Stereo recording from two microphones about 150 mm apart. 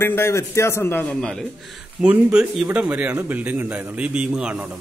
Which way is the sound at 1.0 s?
5° left (ahead or behind).